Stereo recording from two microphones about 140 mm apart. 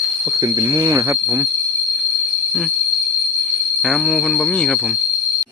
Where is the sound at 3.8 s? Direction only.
Centre (ahead or behind).